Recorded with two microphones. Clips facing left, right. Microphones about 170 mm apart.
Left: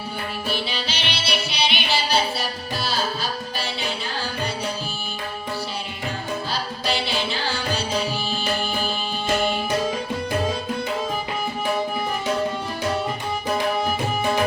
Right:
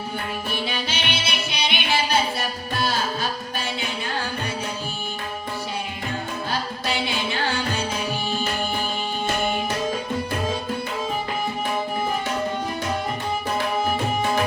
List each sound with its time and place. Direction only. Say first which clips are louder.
0.9 s music: even; 50° right (ahead or behind)